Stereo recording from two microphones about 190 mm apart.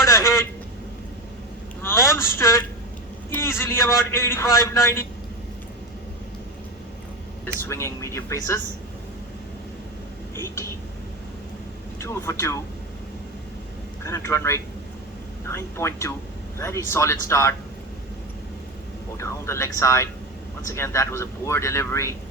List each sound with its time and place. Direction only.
0.0 s a sound: 15° left (ahead or behind)
1.8 s a sound: 10° left (ahead or behind)
3.2 s a man's voice: 10° left (ahead or behind)
7.7 s a man's voice: 15° left (ahead or behind)
10.4 s a man's voice: 15° left (ahead or behind)
11.9 s a man's voice: 15° left (ahead or behind)
14.0 s a man's voice: 15° left (ahead or behind)
19.1 s a man's voice: 15° left (ahead or behind)